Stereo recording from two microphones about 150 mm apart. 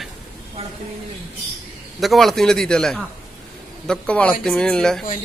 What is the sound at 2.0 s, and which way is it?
A man's voice, centre (ahead or behind).